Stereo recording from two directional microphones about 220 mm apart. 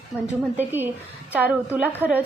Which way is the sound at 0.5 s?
10° right (ahead or behind).